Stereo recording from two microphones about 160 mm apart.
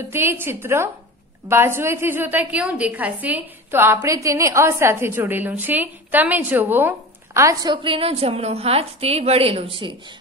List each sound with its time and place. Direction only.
0.1 s a woman's voice: 15° right (ahead or behind)
7.7 s a woman's voice: 35° right (ahead or behind)